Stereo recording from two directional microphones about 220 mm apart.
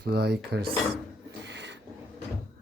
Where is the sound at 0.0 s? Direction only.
50° right (ahead or behind).